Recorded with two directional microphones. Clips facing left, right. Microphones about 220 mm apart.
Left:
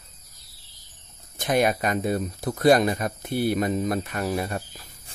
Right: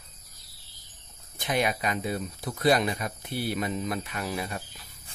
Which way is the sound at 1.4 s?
45° left (ahead or behind).